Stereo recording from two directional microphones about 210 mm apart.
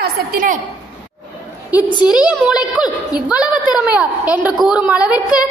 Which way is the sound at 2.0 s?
5° right (ahead or behind).